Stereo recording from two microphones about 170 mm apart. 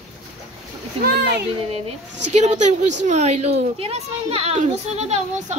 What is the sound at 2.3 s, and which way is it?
A woman's voice, 40° right (ahead or behind).